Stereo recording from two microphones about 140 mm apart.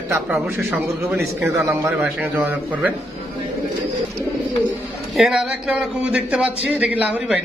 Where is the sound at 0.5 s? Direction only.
20° right (ahead or behind).